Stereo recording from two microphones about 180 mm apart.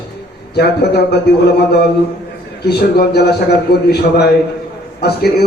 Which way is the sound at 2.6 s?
60° left (ahead or behind).